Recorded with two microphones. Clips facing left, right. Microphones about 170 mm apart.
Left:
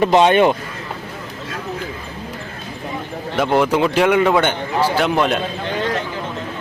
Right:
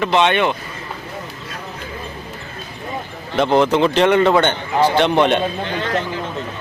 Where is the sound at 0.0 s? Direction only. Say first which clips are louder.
Left 4 dB; 40° left (ahead or behind).